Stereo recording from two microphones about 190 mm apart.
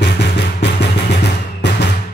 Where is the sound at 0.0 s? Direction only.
65° left (ahead or behind).